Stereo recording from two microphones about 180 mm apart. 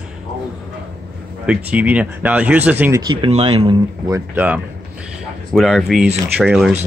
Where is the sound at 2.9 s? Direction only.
25° right (ahead or behind).